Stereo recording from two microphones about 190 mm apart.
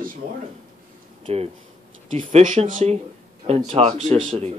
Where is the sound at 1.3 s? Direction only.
35° right (ahead or behind).